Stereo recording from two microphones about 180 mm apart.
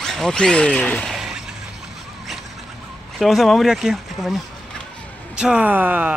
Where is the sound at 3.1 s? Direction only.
Centre (ahead or behind).